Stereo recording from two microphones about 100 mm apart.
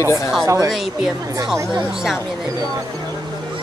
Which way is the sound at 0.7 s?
5° right (ahead or behind).